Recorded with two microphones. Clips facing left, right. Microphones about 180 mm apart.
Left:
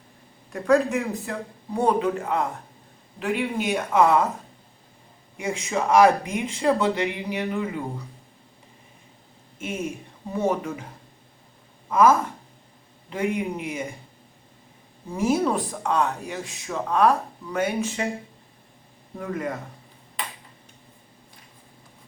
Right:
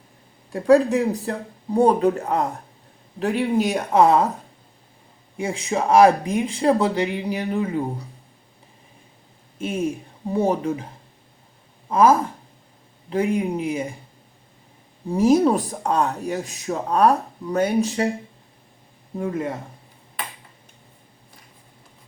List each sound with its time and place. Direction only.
0.5 s speech: 35° right (ahead or behind)
5.4 s speech: 30° right (ahead or behind)
10.3 s speech: 35° right (ahead or behind)
11.9 s speech: 30° right (ahead or behind)
15.1 s speech: 35° right (ahead or behind)
19.1 s speech: 25° right (ahead or behind)